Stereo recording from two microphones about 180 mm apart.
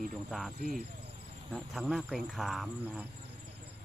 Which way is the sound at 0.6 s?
55° right (ahead or behind).